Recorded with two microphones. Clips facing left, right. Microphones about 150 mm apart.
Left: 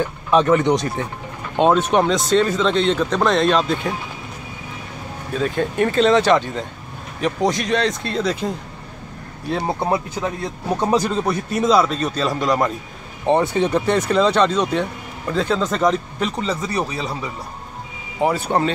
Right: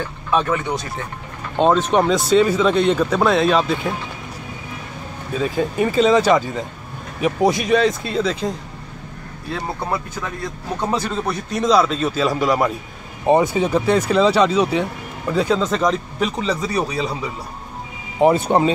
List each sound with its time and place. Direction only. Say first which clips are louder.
0.3 s speech: left 4 dB; 15° left (ahead or behind)
1.6 s speech: even; 5° left (ahead or behind)
5.3 s speech: even; 5° right (ahead or behind)
9.5 s speech: left 4 dB; 20° left (ahead or behind); by 16.4 s centre (ahead or behind)
18.2 s speech: right 4 dB; 20° right (ahead or behind)